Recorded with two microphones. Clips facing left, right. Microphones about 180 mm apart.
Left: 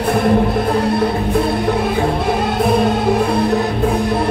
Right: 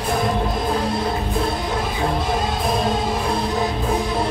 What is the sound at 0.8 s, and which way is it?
Music, 65° left (ahead or behind).